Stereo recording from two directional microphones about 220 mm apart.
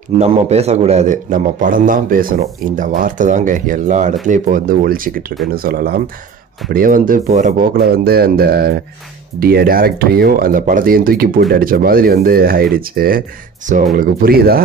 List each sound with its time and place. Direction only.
0.2 s a man's voice: 30° right (ahead or behind)